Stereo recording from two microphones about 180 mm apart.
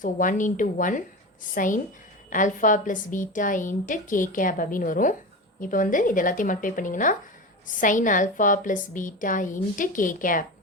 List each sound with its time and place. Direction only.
0.0 s a woman's voice: 45° left (ahead or behind)